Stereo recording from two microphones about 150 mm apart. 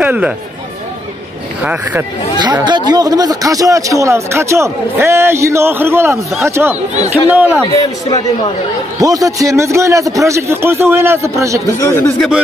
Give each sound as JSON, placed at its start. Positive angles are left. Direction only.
{"t": 0.0, "sound": "speech", "side_deg": -10}
{"t": 1.6, "sound": "speech", "side_deg": -10}
{"t": 2.3, "sound": "a man's voice", "side_deg": -30}
{"t": 9.0, "sound": "a man's voice", "side_deg": -25}
{"t": 11.8, "sound": "speech", "side_deg": 20}